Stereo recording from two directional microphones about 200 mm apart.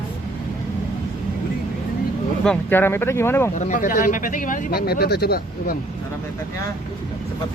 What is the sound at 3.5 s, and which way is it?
Speech, 40° left (ahead or behind).